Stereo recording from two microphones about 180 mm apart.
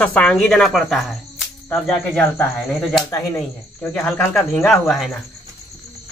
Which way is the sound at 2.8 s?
Centre (ahead or behind).